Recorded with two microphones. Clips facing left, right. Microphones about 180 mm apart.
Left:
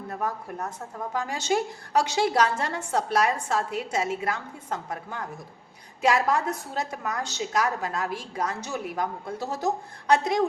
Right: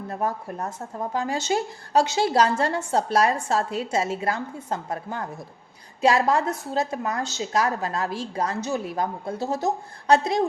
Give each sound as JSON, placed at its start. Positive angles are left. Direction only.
{"t": 0.1, "sound": "speech", "side_deg": -25}